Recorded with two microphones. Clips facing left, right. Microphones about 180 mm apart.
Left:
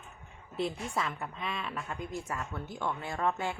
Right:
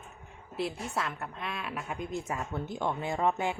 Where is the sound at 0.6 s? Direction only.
5° right (ahead or behind).